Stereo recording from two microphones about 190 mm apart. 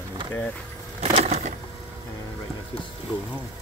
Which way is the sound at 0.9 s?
35° right (ahead or behind).